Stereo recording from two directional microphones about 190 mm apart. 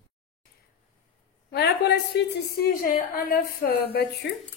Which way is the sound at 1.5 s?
60° left (ahead or behind).